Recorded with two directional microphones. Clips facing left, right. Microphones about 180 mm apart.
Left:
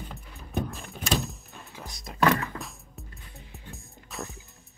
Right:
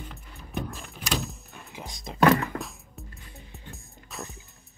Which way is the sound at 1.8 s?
20° right (ahead or behind).